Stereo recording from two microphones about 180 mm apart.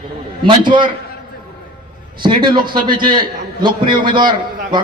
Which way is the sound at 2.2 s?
25° right (ahead or behind).